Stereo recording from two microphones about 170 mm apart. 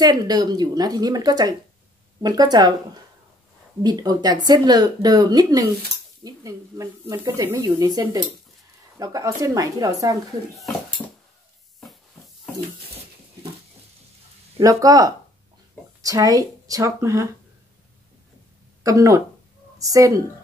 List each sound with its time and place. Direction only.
0.0 s speech: 25° right (ahead or behind)
3.8 s speech: 25° right (ahead or behind)
14.6 s speech: 20° right (ahead or behind)
18.8 s speech: 20° right (ahead or behind)